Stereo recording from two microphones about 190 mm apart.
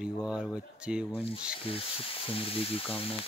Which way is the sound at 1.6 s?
30° left (ahead or behind).